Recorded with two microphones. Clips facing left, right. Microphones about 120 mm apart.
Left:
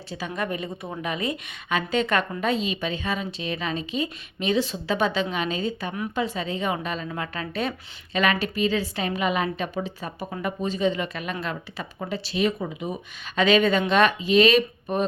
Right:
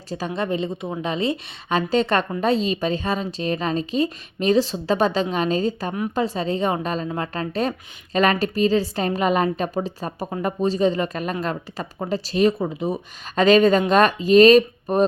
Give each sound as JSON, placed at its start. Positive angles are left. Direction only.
{"t": 0.1, "sound": "a woman's voice", "side_deg": -35}